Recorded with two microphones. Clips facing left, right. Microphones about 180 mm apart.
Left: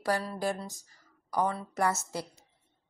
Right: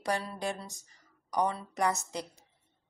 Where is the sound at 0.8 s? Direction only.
20° right (ahead or behind).